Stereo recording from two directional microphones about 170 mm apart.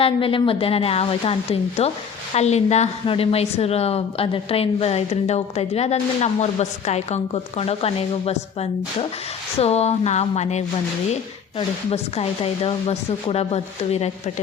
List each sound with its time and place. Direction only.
0.0 s a woman's voice: 30° left (ahead or behind)